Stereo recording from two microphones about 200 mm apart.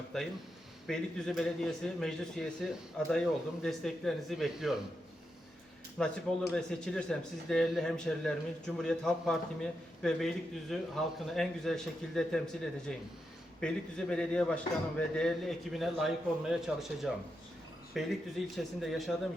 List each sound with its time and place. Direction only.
0.1 s a man's voice: centre (ahead or behind)
6.0 s a man's voice: centre (ahead or behind)